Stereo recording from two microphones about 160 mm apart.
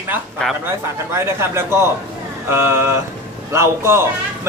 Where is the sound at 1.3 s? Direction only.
15° right (ahead or behind).